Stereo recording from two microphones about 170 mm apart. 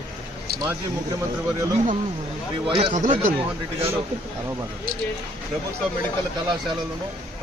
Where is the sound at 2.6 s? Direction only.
35° right (ahead or behind).